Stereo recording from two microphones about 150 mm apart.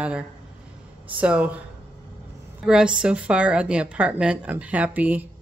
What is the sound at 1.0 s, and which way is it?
Speech, 10° right (ahead or behind).